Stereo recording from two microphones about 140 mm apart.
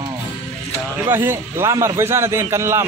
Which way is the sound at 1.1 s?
15° right (ahead or behind).